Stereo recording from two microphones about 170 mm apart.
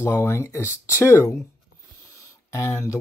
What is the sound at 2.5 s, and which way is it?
Speech, 15° left (ahead or behind).